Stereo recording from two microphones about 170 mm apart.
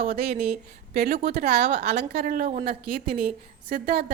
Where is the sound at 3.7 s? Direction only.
60° right (ahead or behind).